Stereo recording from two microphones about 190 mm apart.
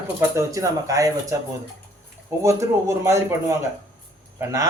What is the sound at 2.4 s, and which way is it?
Speech, 15° right (ahead or behind).